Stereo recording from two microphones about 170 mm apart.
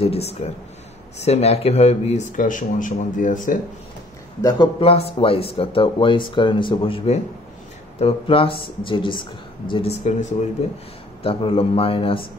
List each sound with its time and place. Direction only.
0.0 s a man's voice: 35° left (ahead or behind)
4.4 s a man's voice: 25° left (ahead or behind)